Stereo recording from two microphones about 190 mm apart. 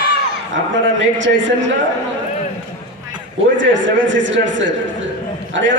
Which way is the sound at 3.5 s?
80° right.